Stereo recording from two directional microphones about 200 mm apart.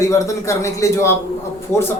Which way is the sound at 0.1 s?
15° left (ahead or behind).